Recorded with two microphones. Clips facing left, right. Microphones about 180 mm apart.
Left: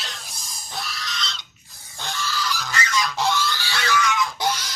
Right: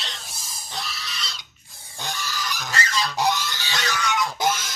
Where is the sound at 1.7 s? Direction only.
20° right (ahead or behind).